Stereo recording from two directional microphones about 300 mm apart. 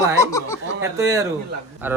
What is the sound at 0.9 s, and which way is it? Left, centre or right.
A man's voice, centre.